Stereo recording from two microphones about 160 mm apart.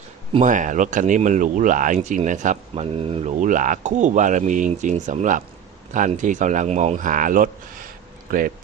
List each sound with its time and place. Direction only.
0.4 s speech: 50° right (ahead or behind)